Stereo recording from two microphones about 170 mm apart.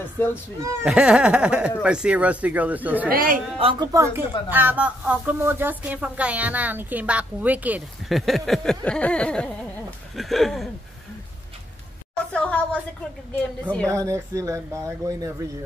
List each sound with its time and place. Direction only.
0.0 s speech: 10° left (ahead or behind)
0.8 s a sound: 5° right (ahead or behind)
1.8 s speech: 5° right (ahead or behind)
3.1 s a man's voice: 55° right (ahead or behind)
3.5 s a woman's voice: 35° right (ahead or behind)
3.9 s speech: 15° right (ahead or behind)
12.3 s a sound: 5° left (ahead or behind)
13.4 s speech: 5° left (ahead or behind)
13.8 s speech: 20° right (ahead or behind)